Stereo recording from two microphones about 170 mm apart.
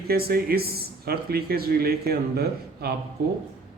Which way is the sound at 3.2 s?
80° right.